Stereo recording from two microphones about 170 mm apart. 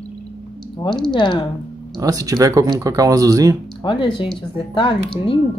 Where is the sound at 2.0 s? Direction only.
20° right (ahead or behind).